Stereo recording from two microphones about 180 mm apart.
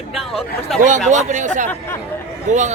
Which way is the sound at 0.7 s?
Centre (ahead or behind).